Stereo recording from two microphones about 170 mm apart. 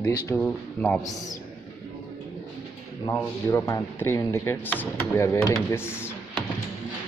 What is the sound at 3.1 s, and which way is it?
Speech, 20° left (ahead or behind).